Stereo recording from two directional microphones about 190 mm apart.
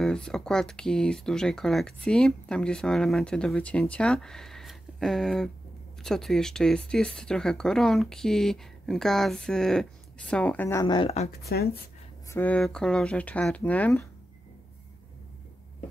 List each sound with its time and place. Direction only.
0.0 s speech: 5° left (ahead or behind); by 11.2 s 30° left (ahead or behind)
11.4 s speech: 55° left (ahead or behind)
12.3 s speech: 10° left (ahead or behind)